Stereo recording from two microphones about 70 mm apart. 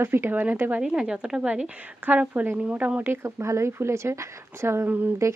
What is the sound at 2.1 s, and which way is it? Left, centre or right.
A woman's voice, right.